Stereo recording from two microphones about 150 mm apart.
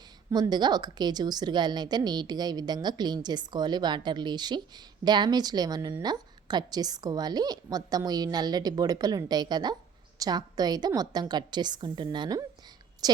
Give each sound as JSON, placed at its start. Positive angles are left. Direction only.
{"t": 0.3, "sound": "a woman's voice", "side_deg": -25}